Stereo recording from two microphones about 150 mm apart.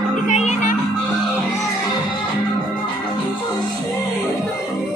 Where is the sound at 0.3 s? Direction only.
50° left (ahead or behind).